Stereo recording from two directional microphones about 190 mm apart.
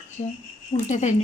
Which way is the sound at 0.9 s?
40° left (ahead or behind).